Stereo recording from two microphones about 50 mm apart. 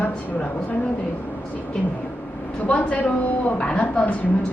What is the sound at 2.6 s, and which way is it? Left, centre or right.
A woman's voice, left.